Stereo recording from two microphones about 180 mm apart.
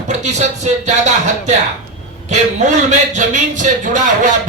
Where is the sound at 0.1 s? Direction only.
40° right (ahead or behind).